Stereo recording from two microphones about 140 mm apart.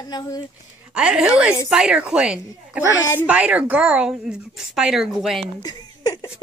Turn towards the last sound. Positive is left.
turn(degrees=25)  # may be behind; listen again after turning